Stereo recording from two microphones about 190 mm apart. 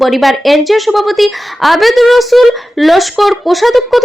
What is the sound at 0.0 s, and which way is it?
A woman's voice, centre (ahead or behind).